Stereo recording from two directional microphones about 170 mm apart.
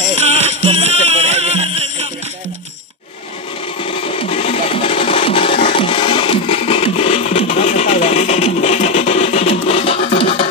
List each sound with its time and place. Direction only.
0.2 s music: 40° right (ahead or behind)
3.8 s music: 35° left (ahead or behind)